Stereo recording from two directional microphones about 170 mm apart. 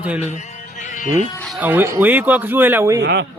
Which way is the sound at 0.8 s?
50° left (ahead or behind).